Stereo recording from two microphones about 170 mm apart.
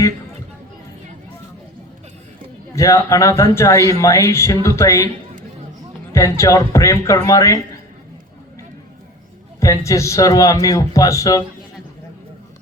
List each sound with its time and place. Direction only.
2.7 s speech: 20° left (ahead or behind)
6.1 s speech: 15° left (ahead or behind)
9.6 s speech: 20° left (ahead or behind)